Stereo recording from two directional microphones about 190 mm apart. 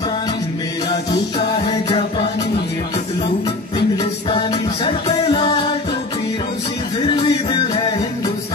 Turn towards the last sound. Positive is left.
turn(degrees=25)  # may be behind; listen again after turning